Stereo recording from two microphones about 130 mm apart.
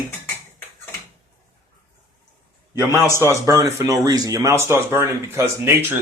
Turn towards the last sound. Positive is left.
turn(degrees=-20)  # may be behind; listen again after turning